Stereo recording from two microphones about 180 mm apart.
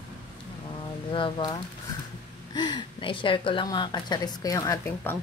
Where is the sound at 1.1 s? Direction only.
25° left (ahead or behind).